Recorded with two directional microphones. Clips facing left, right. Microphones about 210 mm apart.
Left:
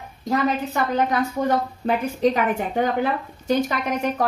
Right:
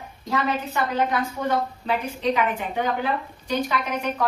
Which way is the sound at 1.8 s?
45° left (ahead or behind).